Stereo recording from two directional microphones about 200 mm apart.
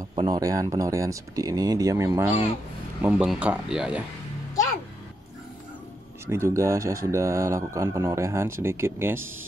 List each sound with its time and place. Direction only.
0.0 s speech: 20° right (ahead or behind); by 4.0 s 5° right (ahead or behind)
6.2 s speech: 15° right (ahead or behind)